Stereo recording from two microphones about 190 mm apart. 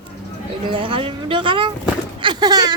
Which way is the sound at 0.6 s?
25° right (ahead or behind).